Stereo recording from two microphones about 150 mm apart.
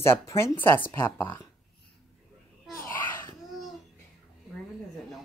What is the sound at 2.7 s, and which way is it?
Babbling, 15° left (ahead or behind).